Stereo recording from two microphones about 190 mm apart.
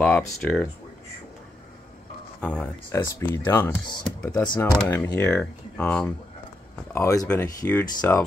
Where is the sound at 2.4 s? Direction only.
5° left (ahead or behind).